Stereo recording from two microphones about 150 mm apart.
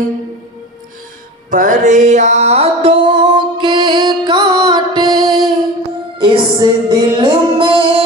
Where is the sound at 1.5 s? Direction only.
60° right (ahead or behind).